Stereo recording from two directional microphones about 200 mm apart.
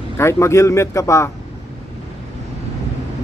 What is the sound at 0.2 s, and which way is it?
Speech, 15° left (ahead or behind).